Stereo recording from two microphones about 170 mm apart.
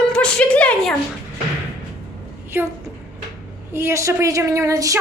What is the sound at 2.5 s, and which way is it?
A woman's voice, 15° right (ahead or behind).